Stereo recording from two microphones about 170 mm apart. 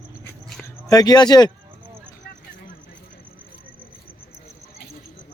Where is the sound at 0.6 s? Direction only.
20° left (ahead or behind).